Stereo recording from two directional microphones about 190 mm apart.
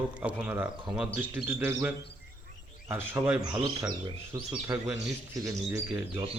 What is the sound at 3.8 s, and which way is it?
Speech, 25° right (ahead or behind).